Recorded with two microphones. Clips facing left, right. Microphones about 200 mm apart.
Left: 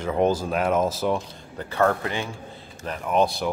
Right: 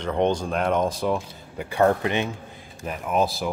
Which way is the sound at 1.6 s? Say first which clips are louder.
Right 2 dB; 15° right (ahead or behind).